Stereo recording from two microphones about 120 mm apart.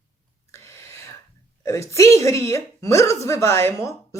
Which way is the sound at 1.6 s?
25° left (ahead or behind).